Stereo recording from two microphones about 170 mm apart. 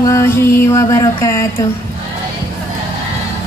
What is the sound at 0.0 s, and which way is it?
Music, 15° left (ahead or behind).